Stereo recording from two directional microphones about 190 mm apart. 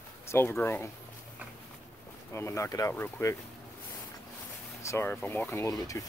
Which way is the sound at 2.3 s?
15° left (ahead or behind).